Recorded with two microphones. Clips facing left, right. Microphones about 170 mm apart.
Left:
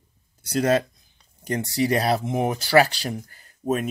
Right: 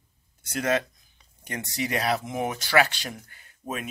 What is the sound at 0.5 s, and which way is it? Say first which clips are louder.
Speech: left 5 dB; 35° left (ahead or behind).